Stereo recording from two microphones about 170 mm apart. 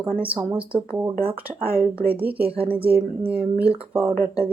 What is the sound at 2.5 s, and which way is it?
Speech, 35° right (ahead or behind).